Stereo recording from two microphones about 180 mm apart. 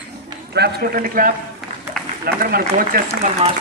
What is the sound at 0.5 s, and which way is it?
A man's voice, 60° right (ahead or behind).